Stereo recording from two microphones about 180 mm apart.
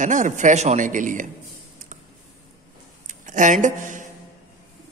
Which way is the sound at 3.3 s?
45° right (ahead or behind).